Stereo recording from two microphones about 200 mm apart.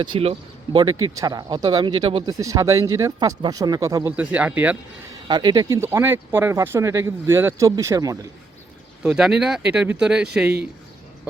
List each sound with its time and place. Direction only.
0.0 s speech: 25° right (ahead or behind); by 4.8 s 10° right (ahead or behind)
5.3 s speech: 20° right (ahead or behind)
9.0 s speech: 5° right (ahead or behind)